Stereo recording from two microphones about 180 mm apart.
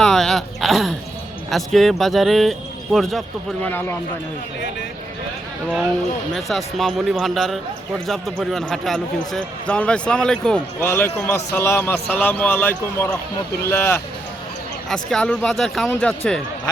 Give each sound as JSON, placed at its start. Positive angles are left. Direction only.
{"t": 0.0, "sound": "a sound", "side_deg": 0}
{"t": 1.5, "sound": "speech", "side_deg": 0}
{"t": 3.7, "sound": "a man's voice", "side_deg": 10}
{"t": 6.3, "sound": "speech", "side_deg": 0}
{"t": 10.8, "sound": "a man's voice", "side_deg": 15}
{"t": 14.8, "sound": "speech", "side_deg": 5}